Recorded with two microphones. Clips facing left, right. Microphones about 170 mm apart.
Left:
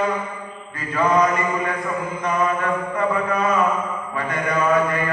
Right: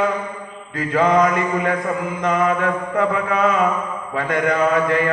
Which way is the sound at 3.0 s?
90° right.